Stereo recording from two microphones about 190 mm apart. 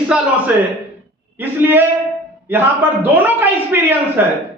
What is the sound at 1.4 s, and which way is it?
A man's voice, 10° right (ahead or behind).